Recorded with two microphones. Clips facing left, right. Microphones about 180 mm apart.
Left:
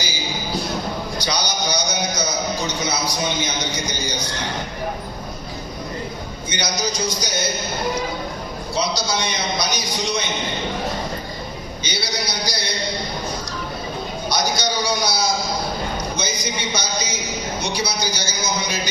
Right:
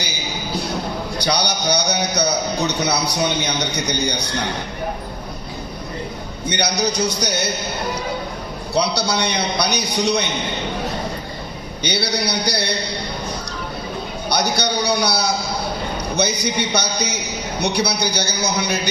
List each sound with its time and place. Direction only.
1.2 s a man's voice: 65° right (ahead or behind)
6.5 s a man's voice: 65° right (ahead or behind)
8.7 s a man's voice: 65° right (ahead or behind)
11.8 s a man's voice: 65° right (ahead or behind)
14.3 s a man's voice: 65° right (ahead or behind)